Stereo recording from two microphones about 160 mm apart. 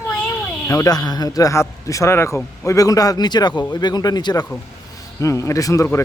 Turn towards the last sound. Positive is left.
turn(degrees=20)  # may be behind; listen again after turning